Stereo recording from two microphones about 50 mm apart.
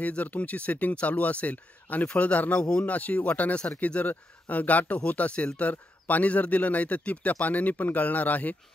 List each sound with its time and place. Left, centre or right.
0.0 s speech: left